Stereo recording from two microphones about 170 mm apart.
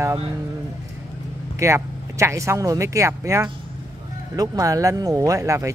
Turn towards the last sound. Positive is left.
turn(degrees=-20)  # may be behind; listen again after turning